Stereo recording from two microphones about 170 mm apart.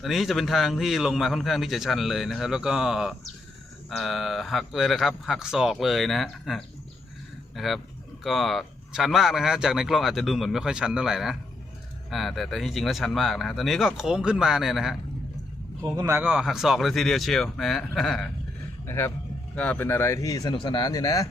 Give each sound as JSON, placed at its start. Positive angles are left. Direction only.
{"t": 0.0, "sound": "a man's voice", "side_deg": 0}
{"t": 15.9, "sound": "a man's voice", "side_deg": -15}
{"t": 16.2, "sound": "a man's voice", "side_deg": -5}
{"t": 18.9, "sound": "speech", "side_deg": 15}